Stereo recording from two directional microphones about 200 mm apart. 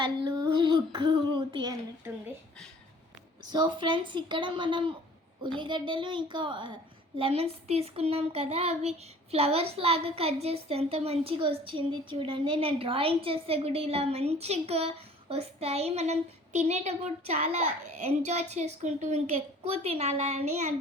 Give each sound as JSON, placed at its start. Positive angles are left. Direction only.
{"t": 0.0, "sound": "a woman's voice", "side_deg": -20}
{"t": 3.5, "sound": "a woman's voice", "side_deg": -20}